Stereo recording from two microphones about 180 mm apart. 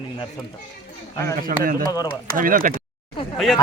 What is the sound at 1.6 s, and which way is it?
Speech, 50° right (ahead or behind).